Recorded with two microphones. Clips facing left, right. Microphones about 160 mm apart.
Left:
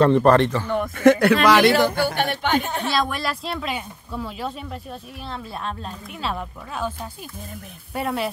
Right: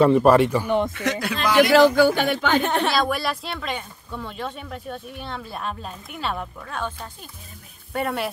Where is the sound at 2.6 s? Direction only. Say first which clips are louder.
Right 5 dB; 75° right (ahead or behind).